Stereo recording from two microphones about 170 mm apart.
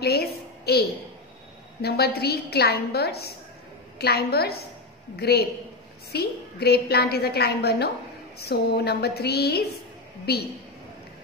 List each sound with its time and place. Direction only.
0.0 s a woman's voice: 70° left (ahead or behind)